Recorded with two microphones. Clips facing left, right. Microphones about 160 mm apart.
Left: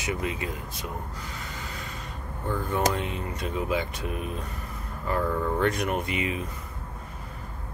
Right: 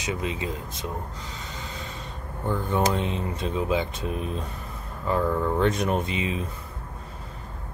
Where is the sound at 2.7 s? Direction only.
25° right (ahead or behind).